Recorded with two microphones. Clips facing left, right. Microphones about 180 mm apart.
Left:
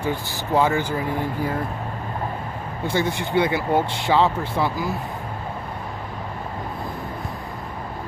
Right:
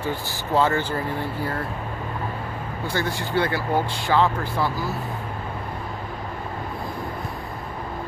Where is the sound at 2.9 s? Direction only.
20° left (ahead or behind).